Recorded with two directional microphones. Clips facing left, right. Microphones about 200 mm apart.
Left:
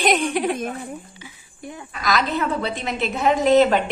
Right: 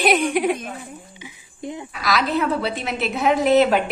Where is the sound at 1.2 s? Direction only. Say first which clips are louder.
Right 5 dB; 20° right (ahead or behind).